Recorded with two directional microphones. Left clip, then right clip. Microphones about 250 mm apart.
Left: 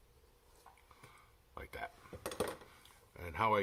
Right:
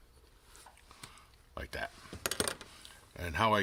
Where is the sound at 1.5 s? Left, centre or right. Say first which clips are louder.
Right 6 dB; right.